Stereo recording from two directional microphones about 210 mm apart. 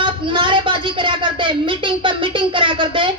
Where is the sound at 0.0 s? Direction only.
25° right (ahead or behind).